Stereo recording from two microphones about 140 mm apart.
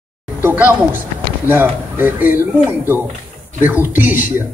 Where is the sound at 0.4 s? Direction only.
15° right (ahead or behind).